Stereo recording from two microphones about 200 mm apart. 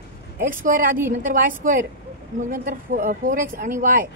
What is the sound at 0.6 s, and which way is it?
A woman's voice, 40° right (ahead or behind).